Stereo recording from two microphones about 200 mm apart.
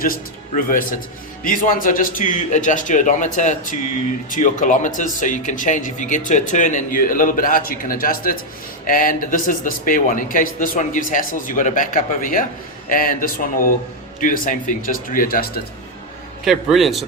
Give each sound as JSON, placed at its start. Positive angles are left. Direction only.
{"t": 0.0, "sound": "a man's voice", "side_deg": 45}
{"t": 16.4, "sound": "a man's voice", "side_deg": 0}